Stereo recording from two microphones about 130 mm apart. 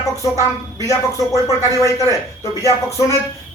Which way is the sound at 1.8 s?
25° left (ahead or behind).